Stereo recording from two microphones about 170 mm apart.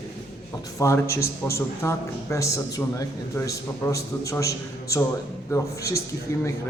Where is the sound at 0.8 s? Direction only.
15° left (ahead or behind).